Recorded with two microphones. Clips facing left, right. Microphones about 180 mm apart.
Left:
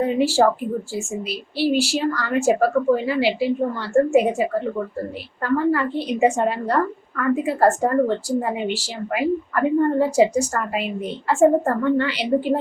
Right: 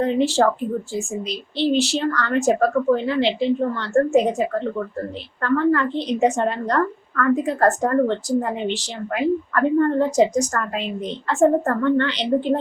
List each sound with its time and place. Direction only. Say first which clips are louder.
0.0 s speech: even; 10° left (ahead or behind)